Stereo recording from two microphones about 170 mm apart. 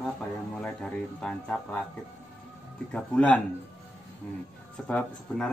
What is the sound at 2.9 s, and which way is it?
Speech, 5° left (ahead or behind).